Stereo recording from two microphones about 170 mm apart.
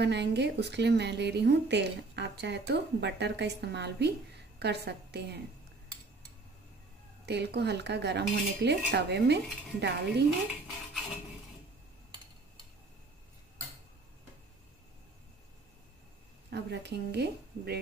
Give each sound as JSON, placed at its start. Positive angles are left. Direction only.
{"t": 0.0, "sound": "a woman's voice", "side_deg": -90}
{"t": 7.2, "sound": "a woman's voice", "side_deg": -80}
{"t": 16.4, "sound": "a woman's voice", "side_deg": -85}